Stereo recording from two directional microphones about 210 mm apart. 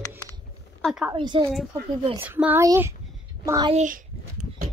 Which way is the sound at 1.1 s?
25° right (ahead or behind).